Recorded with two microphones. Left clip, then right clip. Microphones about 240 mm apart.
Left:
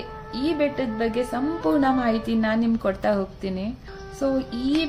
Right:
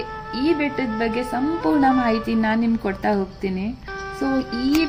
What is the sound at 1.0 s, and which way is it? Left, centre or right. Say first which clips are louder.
Speech: right 1 dB; left.